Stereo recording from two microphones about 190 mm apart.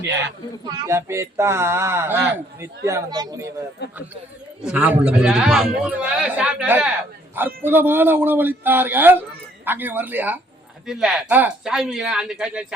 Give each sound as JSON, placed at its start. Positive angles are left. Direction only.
{"t": 0.6, "sound": "speech", "side_deg": -15}
{"t": 3.8, "sound": "speech", "side_deg": 60}
{"t": 4.6, "sound": "a man's voice", "side_deg": -5}